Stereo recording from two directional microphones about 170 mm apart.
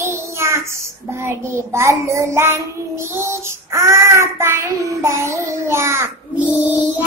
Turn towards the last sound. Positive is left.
turn(degrees=-10)  # may be behind; listen again after turning